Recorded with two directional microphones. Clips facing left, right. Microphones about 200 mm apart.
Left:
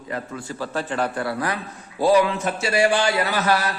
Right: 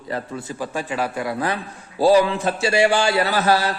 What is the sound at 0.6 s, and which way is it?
Speech, 10° right (ahead or behind).